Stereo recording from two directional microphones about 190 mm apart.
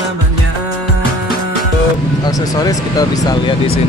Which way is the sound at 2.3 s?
20° left (ahead or behind).